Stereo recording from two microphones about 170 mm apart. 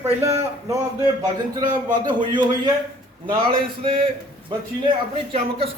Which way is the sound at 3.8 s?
30° right (ahead or behind).